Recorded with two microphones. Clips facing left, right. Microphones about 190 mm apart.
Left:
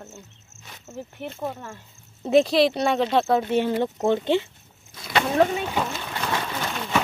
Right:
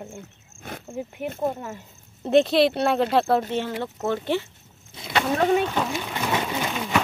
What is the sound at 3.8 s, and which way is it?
Speech, 20° left (ahead or behind).